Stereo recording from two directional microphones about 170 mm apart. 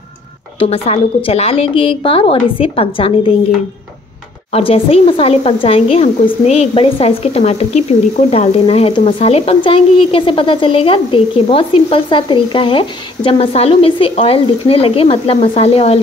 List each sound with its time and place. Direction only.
0.6 s speech: 35° left (ahead or behind)
4.5 s speech: 35° left (ahead or behind)